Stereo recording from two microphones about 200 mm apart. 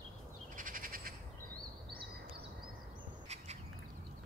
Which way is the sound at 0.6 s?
45° right (ahead or behind).